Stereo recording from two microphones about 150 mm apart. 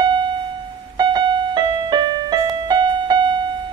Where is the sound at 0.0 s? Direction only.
30° right (ahead or behind).